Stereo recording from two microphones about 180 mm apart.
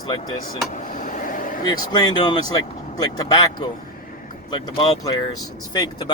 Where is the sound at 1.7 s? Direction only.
20° left (ahead or behind).